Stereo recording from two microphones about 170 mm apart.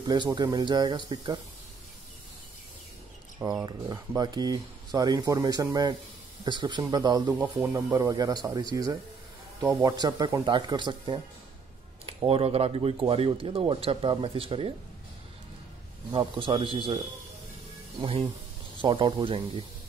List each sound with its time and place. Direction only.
0.0 s speech: 25° right (ahead or behind)
3.6 s speech: 20° right (ahead or behind)
16.1 s speech: 30° right (ahead or behind)
18.8 s speech: 30° right (ahead or behind)